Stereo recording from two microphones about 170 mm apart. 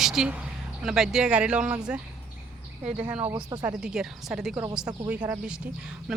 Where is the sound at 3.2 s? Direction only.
20° right (ahead or behind).